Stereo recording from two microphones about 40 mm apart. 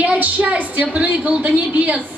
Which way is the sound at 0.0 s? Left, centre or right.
Right.